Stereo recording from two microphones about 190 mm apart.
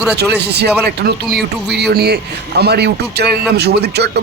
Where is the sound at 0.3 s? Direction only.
60° right (ahead or behind).